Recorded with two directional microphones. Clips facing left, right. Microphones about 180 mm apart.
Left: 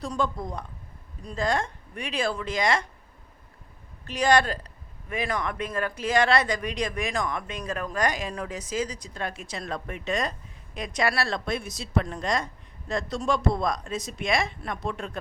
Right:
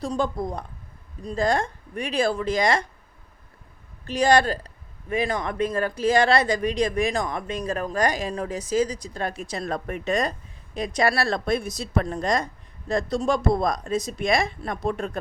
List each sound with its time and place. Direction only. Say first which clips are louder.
0.0 s speech: right 3 dB; 35° right (ahead or behind)
4.0 s speech: right 3 dB; 30° right (ahead or behind)